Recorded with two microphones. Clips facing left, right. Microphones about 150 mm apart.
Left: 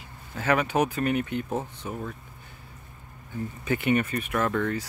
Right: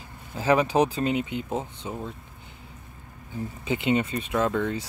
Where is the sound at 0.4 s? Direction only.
30° right (ahead or behind).